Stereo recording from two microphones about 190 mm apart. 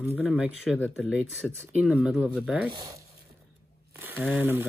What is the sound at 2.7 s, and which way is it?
Speech, 20° right (ahead or behind).